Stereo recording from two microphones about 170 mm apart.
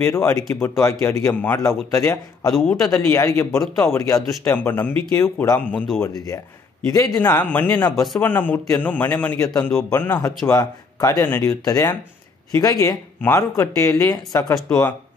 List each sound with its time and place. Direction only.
0.0 s a man's voice: 15° left (ahead or behind)
2.5 s speech: 5° left (ahead or behind)
2.9 s a man's voice: 15° left (ahead or behind)
6.0 s a man's voice: 20° left (ahead or behind)